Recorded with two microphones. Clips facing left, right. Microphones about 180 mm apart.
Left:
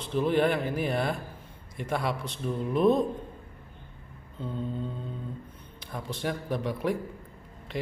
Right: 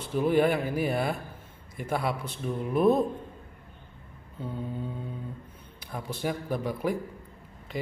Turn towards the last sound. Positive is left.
turn(degrees=0)  # may be behind; listen again after turning